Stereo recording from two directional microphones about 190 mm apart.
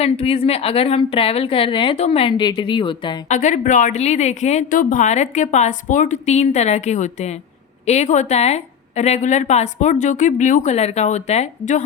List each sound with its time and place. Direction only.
0.0 s a woman's voice: 30° left (ahead or behind)
3.2 s a woman's voice: 40° left (ahead or behind)